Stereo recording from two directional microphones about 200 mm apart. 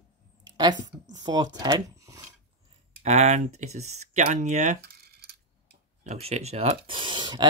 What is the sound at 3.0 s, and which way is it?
Speech, 35° right (ahead or behind).